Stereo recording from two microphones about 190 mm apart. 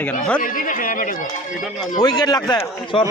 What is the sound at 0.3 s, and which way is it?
Speech, 45° left (ahead or behind).